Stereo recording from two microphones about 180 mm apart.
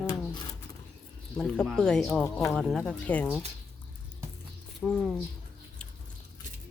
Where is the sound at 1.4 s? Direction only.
5° left (ahead or behind).